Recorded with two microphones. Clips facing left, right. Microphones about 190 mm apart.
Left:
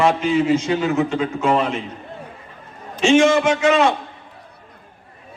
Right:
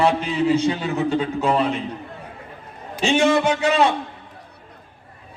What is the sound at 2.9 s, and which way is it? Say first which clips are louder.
Speech: left 4 dB; 35° right (ahead or behind).